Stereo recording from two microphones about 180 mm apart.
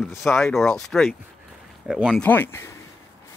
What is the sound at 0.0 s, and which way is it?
Speech, centre (ahead or behind).